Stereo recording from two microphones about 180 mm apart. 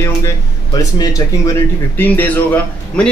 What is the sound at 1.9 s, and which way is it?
A man's voice, 10° left (ahead or behind).